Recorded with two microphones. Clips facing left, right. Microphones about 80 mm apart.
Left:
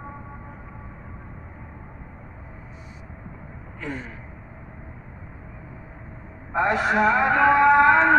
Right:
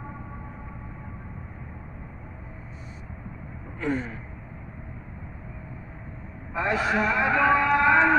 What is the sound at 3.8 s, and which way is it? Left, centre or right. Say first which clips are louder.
Gasp: right 5 dB; centre.